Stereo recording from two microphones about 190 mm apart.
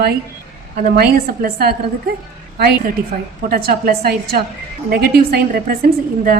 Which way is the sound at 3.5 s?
50° right (ahead or behind).